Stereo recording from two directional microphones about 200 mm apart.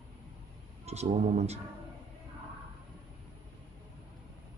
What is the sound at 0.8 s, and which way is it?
Speech, 30° right (ahead or behind).